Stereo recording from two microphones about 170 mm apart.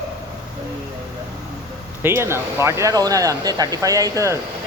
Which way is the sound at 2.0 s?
15° right (ahead or behind).